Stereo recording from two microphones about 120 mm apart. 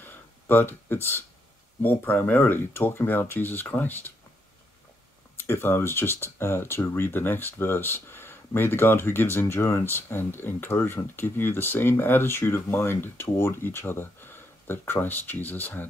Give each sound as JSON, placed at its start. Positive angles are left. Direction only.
{"t": 0.0, "sound": "a sound", "side_deg": 15}
{"t": 1.8, "sound": "speech", "side_deg": 15}
{"t": 5.5, "sound": "speech", "side_deg": 20}